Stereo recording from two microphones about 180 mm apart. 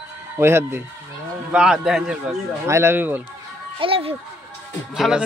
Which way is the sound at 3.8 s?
30° right (ahead or behind).